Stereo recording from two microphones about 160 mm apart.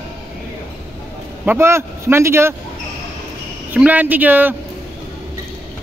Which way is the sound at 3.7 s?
10° right (ahead or behind).